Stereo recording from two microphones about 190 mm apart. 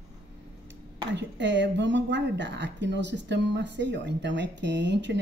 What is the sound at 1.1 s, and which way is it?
Speech, 65° right (ahead or behind).